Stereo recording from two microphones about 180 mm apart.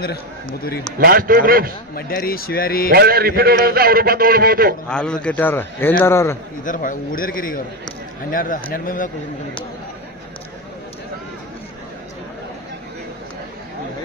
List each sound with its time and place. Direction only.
0.0 s a man's voice: 55° left (ahead or behind)
0.9 s a man's voice: 55° right (ahead or behind)
2.0 s a man's voice: 55° left (ahead or behind)
2.9 s a man's voice: 60° right (ahead or behind)
4.8 s a man's voice: 5° left (ahead or behind)
6.6 s a man's voice: 45° left (ahead or behind)